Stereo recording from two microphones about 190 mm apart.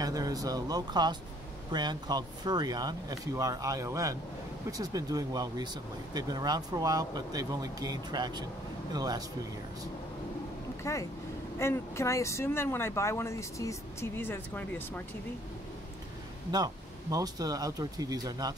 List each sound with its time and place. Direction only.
0.0 s speech: 20° right (ahead or behind)
10.8 s speech: 15° left (ahead or behind)
16.5 s speech: 20° right (ahead or behind)